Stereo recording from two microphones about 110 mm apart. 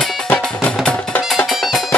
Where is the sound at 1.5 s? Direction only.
5° right (ahead or behind).